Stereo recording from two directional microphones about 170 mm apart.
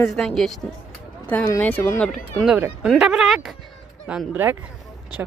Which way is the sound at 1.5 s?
10° left (ahead or behind).